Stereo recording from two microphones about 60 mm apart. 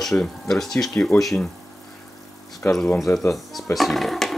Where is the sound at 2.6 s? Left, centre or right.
Left.